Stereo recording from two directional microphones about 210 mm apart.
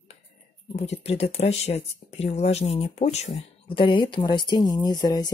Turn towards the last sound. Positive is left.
turn(degrees=20)  # may be behind; listen again after turning